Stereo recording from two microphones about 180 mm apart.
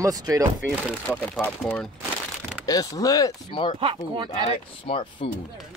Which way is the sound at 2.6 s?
20° left (ahead or behind).